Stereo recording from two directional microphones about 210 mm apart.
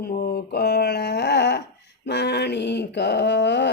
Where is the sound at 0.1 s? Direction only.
45° left (ahead or behind).